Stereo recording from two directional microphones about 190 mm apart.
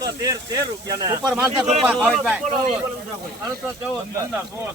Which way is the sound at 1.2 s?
5° right (ahead or behind).